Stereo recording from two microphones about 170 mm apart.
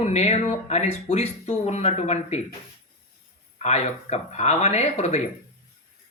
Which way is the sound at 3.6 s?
40° left (ahead or behind).